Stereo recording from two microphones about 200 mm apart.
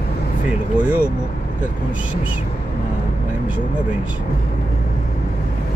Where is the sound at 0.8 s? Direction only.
5° right (ahead or behind).